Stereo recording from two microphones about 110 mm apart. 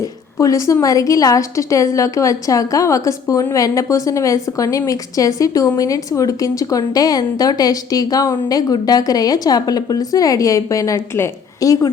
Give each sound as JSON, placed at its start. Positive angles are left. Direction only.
{"t": 0.3, "sound": "a woman's voice", "side_deg": 30}